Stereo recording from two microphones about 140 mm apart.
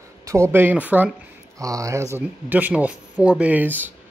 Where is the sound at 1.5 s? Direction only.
25° right (ahead or behind).